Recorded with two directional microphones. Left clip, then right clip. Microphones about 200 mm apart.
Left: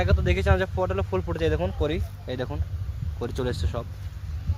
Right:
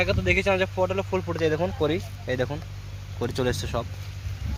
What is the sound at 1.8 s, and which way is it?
Speech, 25° right (ahead or behind).